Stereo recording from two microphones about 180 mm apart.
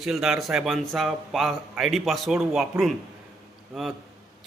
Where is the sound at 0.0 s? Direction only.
Centre (ahead or behind).